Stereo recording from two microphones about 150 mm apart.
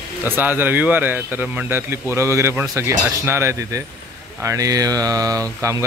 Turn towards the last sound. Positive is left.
turn(degrees=-20)  # may be behind; listen again after turning